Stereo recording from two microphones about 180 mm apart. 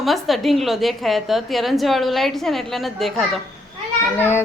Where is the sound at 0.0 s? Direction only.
Centre (ahead or behind).